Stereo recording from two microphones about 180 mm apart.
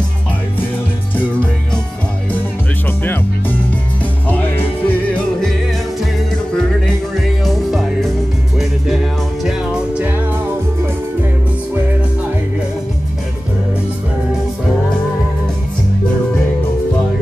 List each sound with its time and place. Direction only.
3.0 s music: 10° left (ahead or behind)
4.8 s music: 5° left (ahead or behind)
7.2 s music: centre (ahead or behind)